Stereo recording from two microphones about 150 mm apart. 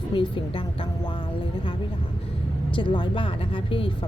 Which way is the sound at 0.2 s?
35° left (ahead or behind).